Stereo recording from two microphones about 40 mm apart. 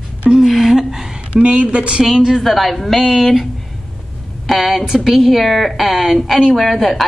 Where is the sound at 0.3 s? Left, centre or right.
Centre.